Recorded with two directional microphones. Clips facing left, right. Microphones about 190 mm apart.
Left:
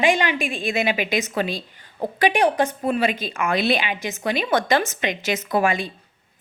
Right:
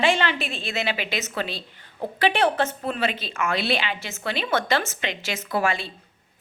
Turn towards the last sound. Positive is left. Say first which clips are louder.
# left 4 dB
turn(degrees=15)  # may be behind; listen again after turning